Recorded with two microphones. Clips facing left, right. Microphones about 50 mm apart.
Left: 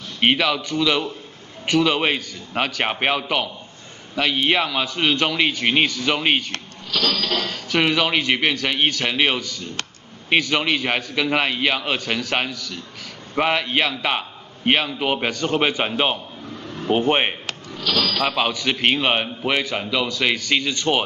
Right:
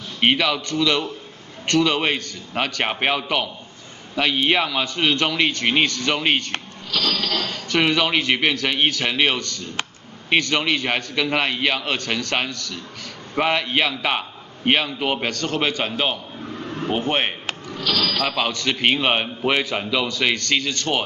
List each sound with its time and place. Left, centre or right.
0.2 s a man's voice: centre
16.6 s a sound: right
16.9 s a man's voice: centre
18.1 s a man's voice: centre